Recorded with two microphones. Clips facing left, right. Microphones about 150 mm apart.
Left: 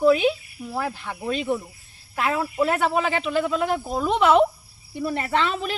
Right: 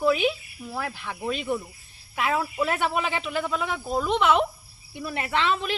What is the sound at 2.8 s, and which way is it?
Speech, 35° left (ahead or behind).